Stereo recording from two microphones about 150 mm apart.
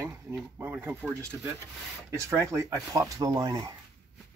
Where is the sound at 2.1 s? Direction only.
15° right (ahead or behind).